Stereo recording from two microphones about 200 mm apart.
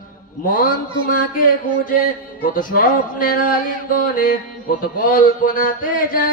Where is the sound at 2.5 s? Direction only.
45° left (ahead or behind).